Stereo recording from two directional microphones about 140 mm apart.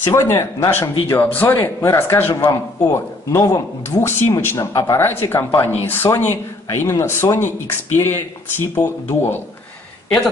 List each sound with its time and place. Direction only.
0.0 s speech: 20° left (ahead or behind)
5.0 s speech: 15° left (ahead or behind)